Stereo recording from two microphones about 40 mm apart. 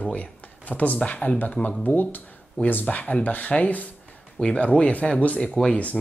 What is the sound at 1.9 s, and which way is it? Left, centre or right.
Speech, left.